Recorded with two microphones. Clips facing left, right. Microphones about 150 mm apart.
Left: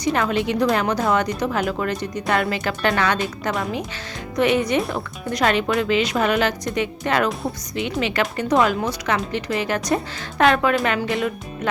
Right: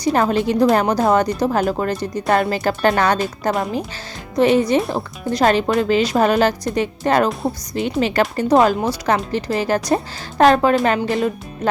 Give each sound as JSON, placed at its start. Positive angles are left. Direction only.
{"t": 0.0, "sound": "a woman's voice", "side_deg": -40}